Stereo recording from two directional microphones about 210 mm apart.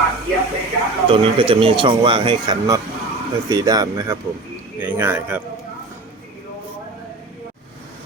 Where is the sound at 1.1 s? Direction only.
25° right (ahead or behind); by 5.4 s 10° right (ahead or behind).